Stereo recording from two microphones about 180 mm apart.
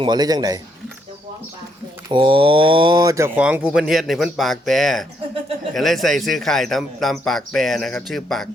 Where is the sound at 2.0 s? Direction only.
25° right (ahead or behind); by 8.4 s centre (ahead or behind).